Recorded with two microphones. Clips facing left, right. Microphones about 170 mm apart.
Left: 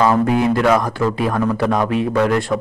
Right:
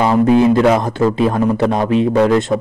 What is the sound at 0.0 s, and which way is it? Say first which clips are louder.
Speech: right 4 dB; 25° right (ahead or behind).